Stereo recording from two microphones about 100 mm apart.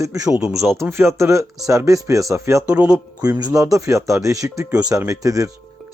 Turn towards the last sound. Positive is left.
turn(degrees=-35)  # may be behind; listen again after turning